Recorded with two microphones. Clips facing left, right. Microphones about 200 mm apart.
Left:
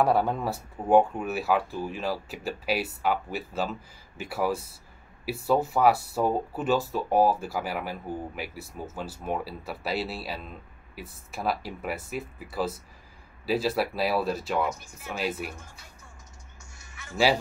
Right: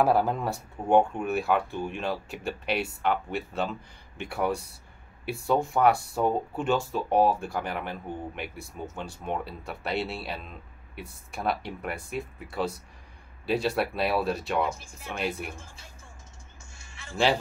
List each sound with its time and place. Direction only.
0.0 s speech: centre (ahead or behind)
15.5 s speech: 25° right (ahead or behind)
16.7 s a sound: 30° right (ahead or behind)